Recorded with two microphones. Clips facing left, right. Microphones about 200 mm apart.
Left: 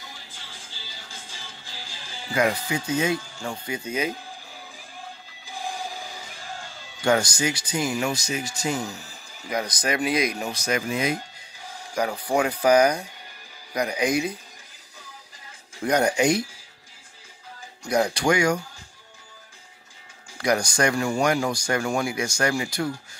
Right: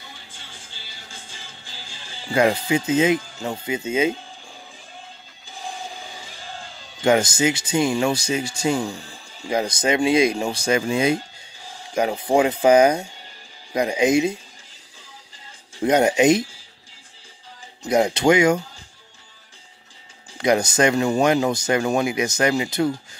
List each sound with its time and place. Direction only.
2.3 s speech: 30° right (ahead or behind)
7.0 s speech: 20° right (ahead or behind)
15.8 s speech: 20° right (ahead or behind)
17.8 s speech: 20° right (ahead or behind)
20.3 s speech: 20° right (ahead or behind)